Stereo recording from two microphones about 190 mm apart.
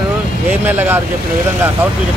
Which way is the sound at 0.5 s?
10° right (ahead or behind).